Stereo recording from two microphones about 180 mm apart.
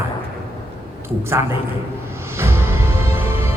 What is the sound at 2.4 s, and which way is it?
Music, 15° right (ahead or behind).